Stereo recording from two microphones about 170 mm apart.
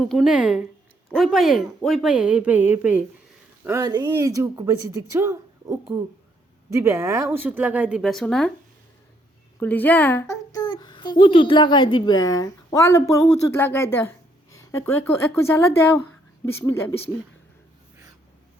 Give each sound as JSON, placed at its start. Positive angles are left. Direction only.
{"t": 0.0, "sound": "speech", "side_deg": 0}
{"t": 9.6, "sound": "a woman's voice", "side_deg": 10}